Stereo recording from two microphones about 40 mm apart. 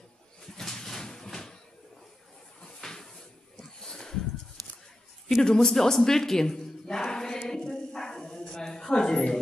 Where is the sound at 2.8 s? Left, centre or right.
Centre.